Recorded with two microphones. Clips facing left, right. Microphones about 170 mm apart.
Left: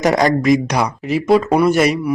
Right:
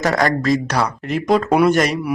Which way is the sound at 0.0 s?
20° left (ahead or behind).